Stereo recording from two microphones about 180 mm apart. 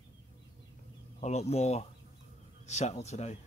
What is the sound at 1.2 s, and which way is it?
A man's voice, 35° left (ahead or behind).